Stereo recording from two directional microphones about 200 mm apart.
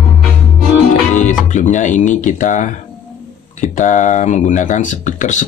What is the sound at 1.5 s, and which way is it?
Speech, 40° left (ahead or behind).